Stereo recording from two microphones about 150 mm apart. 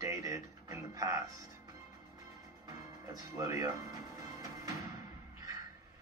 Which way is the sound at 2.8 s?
20° right (ahead or behind).